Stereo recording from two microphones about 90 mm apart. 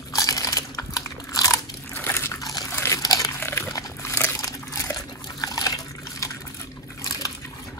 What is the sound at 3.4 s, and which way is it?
Dog, 30° left (ahead or behind).